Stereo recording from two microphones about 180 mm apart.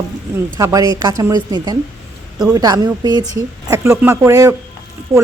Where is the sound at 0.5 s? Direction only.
20° right (ahead or behind).